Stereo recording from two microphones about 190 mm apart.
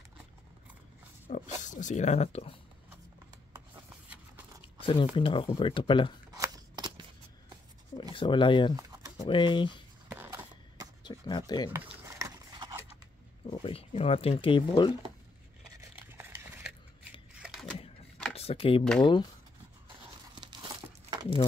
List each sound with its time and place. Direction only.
1.6 s speech: 40° left (ahead or behind)
4.8 s speech: 25° left (ahead or behind)
6.3 s a sound: 20° right (ahead or behind)
8.1 s speech: 25° left (ahead or behind)
8.7 s typing: 20° right (ahead or behind)
9.2 s speech: 25° left (ahead or behind)
10.0 s a sound: 10° right (ahead or behind)
11.1 s speech: 20° left (ahead or behind)
11.7 s cutlery: 15° right (ahead or behind)
13.5 s speech: 30° left (ahead or behind)
16.0 s stir: 10° right (ahead or behind)
17.4 s a sound: centre (ahead or behind)
18.3 s a sound: 30° left (ahead or behind)
20.3 s crumpling: 20° right (ahead or behind)